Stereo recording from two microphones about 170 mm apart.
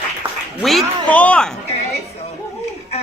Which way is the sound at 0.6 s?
Centre (ahead or behind).